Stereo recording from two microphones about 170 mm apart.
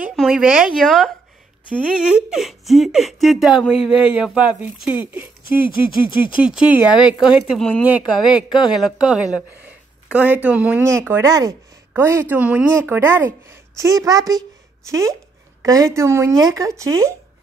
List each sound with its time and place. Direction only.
0.0 s speech: centre (ahead or behind)
6.4 s speech: 5° right (ahead or behind)